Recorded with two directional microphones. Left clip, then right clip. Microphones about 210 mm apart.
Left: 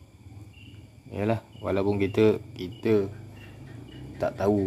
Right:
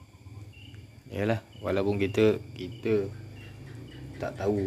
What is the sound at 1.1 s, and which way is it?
A man's voice, 5° left (ahead or behind).